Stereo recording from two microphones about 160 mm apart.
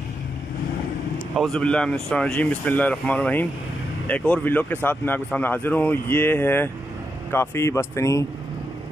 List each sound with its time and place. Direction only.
1.3 s speech: centre (ahead or behind); by 8.3 s 20° left (ahead or behind)